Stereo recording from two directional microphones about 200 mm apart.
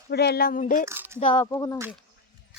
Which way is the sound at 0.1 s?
55° left (ahead or behind).